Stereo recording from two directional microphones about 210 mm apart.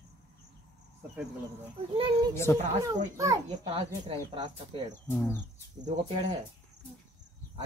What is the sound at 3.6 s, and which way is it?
Speech, 30° right (ahead or behind).